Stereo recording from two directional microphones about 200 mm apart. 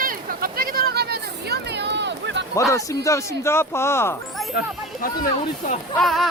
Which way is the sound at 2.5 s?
15° left (ahead or behind).